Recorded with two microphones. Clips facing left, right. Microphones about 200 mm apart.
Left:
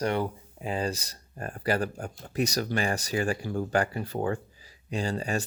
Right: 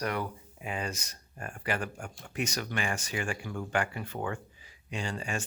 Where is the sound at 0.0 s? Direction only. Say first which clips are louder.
Left 5 dB; 30° left (ahead or behind).